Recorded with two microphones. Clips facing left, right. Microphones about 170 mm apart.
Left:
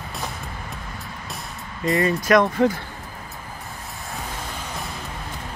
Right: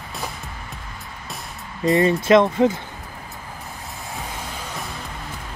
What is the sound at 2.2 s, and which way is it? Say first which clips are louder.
Speech: right 1 dB; 20° right (ahead or behind).